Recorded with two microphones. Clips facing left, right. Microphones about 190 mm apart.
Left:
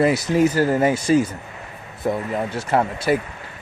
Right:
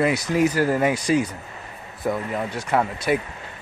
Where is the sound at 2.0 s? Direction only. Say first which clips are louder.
Left 2 dB; 30° left (ahead or behind).